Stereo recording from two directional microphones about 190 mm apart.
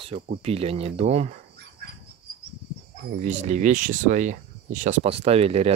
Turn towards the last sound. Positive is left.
turn(degrees=-30)  # may be behind; listen again after turning